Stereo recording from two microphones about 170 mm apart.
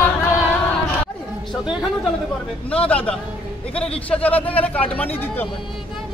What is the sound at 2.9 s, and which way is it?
A man's voice, 5° left (ahead or behind).